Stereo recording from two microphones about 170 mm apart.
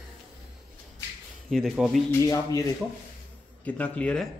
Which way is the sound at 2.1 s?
20° left (ahead or behind).